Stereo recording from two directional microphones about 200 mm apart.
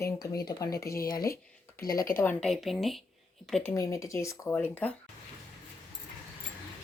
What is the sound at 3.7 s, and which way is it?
Speech, 15° left (ahead or behind).